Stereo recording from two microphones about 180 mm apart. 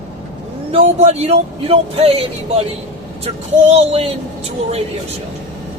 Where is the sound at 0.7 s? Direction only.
35° right (ahead or behind).